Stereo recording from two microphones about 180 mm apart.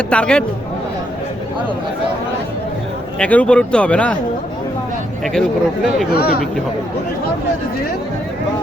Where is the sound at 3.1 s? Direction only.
5° left (ahead or behind).